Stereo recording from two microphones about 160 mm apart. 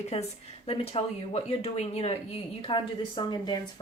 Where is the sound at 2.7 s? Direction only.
30° left (ahead or behind).